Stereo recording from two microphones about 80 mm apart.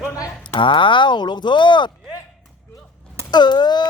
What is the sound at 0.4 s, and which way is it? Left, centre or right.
Speech, left.